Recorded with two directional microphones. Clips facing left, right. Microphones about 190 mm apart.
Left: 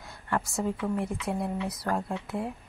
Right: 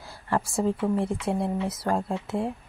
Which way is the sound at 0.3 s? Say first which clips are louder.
Right 4 dB; 30° right (ahead or behind).